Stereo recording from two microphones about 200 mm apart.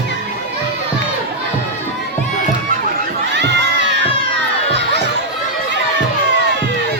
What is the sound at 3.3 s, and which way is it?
Crowd, 60° right (ahead or behind).